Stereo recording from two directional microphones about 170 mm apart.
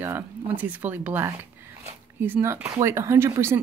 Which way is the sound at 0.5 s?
10° right (ahead or behind).